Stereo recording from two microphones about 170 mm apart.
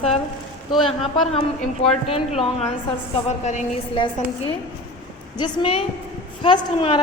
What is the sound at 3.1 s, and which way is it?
Speech, 45° left (ahead or behind).